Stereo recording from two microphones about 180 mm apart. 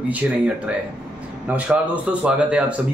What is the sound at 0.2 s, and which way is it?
Speech, 5° right (ahead or behind).